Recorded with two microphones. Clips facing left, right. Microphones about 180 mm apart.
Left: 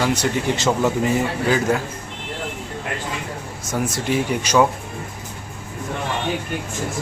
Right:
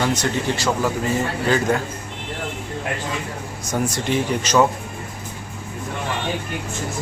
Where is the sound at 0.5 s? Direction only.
20° left (ahead or behind).